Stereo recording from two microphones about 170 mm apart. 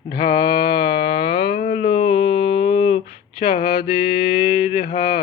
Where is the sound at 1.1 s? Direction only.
30° left (ahead or behind).